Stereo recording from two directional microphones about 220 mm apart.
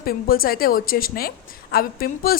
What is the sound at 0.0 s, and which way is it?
A woman's voice, 40° left (ahead or behind).